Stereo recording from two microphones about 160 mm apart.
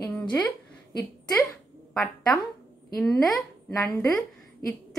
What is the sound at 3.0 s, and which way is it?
Speech, centre (ahead or behind).